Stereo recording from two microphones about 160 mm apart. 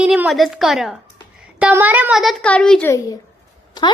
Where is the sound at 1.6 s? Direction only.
10° right (ahead or behind); by 2.9 s 5° left (ahead or behind).